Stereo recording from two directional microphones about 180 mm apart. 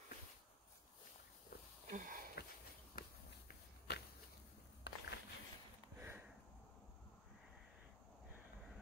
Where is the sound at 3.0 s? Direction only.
60° left (ahead or behind).